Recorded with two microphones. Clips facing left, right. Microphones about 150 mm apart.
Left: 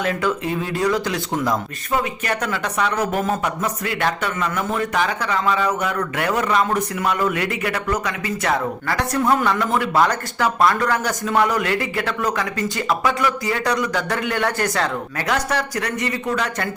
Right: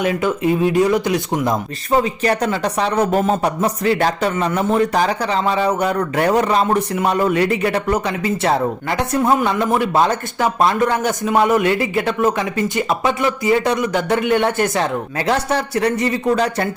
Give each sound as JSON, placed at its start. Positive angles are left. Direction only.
{"t": 0.0, "sound": "a man's voice", "side_deg": -20}
{"t": 1.9, "sound": "a man's voice", "side_deg": -30}